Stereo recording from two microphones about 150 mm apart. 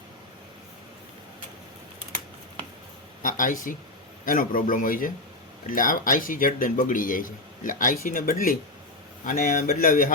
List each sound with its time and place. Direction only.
3.2 s speech: 65° left (ahead or behind)